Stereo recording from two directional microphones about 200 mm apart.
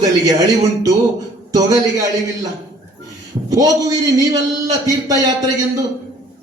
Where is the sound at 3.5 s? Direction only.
20° right (ahead or behind).